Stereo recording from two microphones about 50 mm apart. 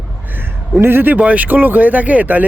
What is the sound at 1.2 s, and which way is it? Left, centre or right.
Speech, right.